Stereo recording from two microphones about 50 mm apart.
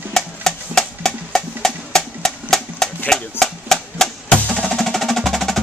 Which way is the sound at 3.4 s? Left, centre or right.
Centre.